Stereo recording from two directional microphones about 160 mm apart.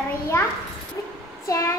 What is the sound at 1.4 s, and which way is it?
Speech, 20° left (ahead or behind).